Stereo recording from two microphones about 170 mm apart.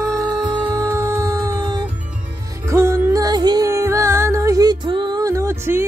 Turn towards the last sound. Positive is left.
turn(degrees=-15)  # may be behind; listen again after turning